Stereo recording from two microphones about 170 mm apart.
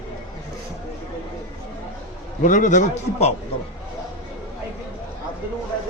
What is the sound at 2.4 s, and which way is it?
Speech, 50° left (ahead or behind).